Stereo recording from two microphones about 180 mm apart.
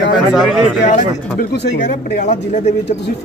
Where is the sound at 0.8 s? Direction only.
45° left (ahead or behind).